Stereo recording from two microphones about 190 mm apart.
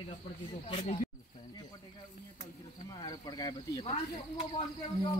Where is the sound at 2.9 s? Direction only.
20° left (ahead or behind).